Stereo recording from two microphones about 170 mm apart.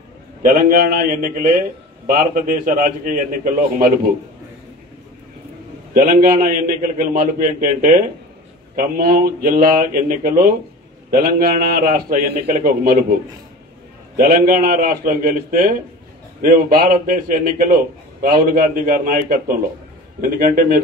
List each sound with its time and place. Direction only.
0.4 s a man's voice: 60° right (ahead or behind)
6.4 s a man's voice: 60° right (ahead or behind)
14.1 s a man's voice: 60° right (ahead or behind)